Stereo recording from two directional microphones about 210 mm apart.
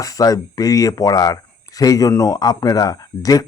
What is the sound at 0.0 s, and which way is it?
Speech, 15° left (ahead or behind).